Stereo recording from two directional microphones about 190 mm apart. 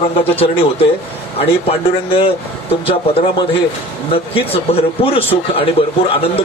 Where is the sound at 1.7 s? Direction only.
30° left (ahead or behind).